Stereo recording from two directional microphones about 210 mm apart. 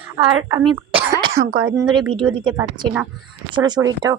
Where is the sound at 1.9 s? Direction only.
20° right (ahead or behind).